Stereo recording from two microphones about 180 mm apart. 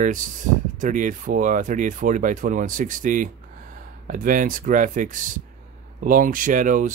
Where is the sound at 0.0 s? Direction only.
45° right (ahead or behind).